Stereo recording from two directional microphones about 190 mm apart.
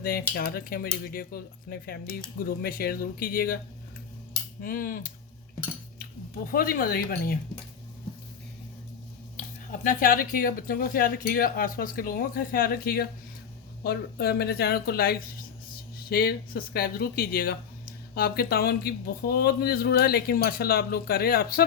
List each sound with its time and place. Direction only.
0.0 s speech: 50° left (ahead or behind)
4.6 s speech: 50° left (ahead or behind)
9.8 s speech: 45° left (ahead or behind)